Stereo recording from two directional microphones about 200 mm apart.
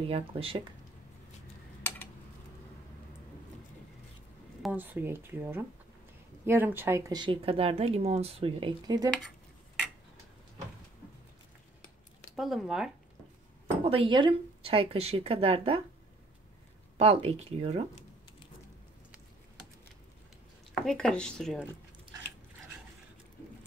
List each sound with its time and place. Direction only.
0.0 s speech: 30° right (ahead or behind)
4.6 s speech: 10° right (ahead or behind)
12.4 s speech: centre (ahead or behind)
13.8 s speech: 25° right (ahead or behind)
16.9 s speech: 30° right (ahead or behind)
20.7 s speech: 5° left (ahead or behind)